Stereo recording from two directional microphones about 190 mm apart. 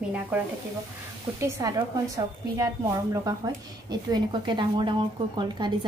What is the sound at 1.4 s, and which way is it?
A woman's voice, 15° right (ahead or behind).